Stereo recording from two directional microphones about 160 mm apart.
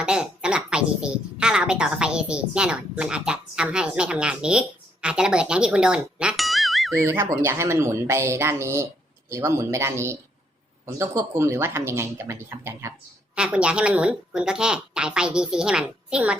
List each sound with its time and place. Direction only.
0.0 s a woman's voice: 5° right (ahead or behind)
7.0 s a woman's voice: 15° right (ahead or behind)